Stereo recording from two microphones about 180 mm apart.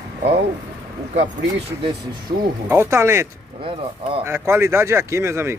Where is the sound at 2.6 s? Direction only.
15° right (ahead or behind).